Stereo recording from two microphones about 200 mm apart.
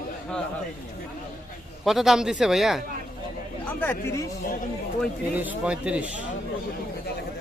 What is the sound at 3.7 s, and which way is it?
Chatter, 10° left (ahead or behind).